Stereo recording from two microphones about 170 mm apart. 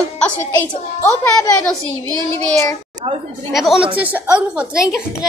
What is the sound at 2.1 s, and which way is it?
Child singing, 15° left (ahead or behind).